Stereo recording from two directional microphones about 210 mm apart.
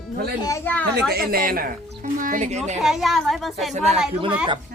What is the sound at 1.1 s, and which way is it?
Speech, 45° right (ahead or behind).